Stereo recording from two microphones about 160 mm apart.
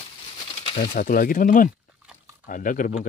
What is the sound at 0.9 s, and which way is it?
Speech, 60° left (ahead or behind).